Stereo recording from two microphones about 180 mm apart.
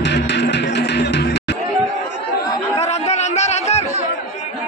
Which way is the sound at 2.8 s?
35° left (ahead or behind).